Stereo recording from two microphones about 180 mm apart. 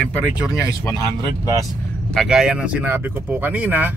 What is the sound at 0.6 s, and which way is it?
Speech, 15° left (ahead or behind).